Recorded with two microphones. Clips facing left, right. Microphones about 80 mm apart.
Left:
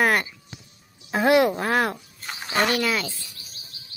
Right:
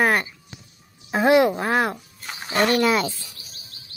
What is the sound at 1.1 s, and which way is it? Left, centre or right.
Quack, right.